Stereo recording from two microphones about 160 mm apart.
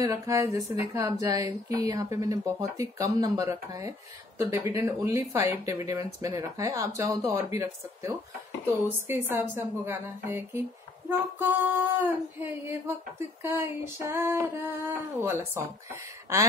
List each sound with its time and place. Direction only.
0.0 s speech: 20° right (ahead or behind)
8.8 s female singing: 15° right (ahead or behind)